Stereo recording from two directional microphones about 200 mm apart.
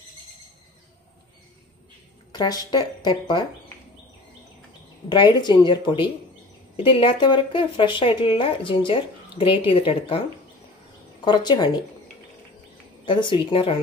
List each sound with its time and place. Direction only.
2.3 s speech: 20° left (ahead or behind)
5.1 s speech: 20° left (ahead or behind)
11.2 s speech: 20° left (ahead or behind)
13.0 s speech: 25° left (ahead or behind)